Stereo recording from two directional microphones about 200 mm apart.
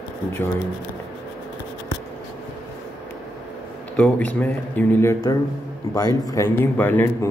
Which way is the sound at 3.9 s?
5° left (ahead or behind).